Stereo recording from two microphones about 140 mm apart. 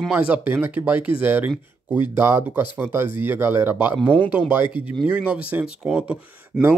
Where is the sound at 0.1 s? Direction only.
10° right (ahead or behind).